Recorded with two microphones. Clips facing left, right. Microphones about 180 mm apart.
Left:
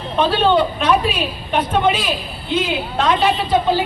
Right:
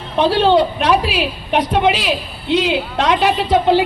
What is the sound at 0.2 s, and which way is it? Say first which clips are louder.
A man's voice: right 3 dB; 70° right (ahead or behind).